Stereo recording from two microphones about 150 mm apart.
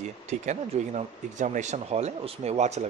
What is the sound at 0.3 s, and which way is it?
Speech, 50° right (ahead or behind).